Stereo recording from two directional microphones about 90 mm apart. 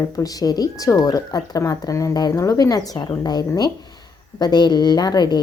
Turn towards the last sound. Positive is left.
turn(degrees=50)  # may be behind; listen again after turning